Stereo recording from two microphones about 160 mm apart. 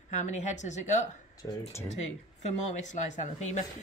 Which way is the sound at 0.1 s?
45° left (ahead or behind).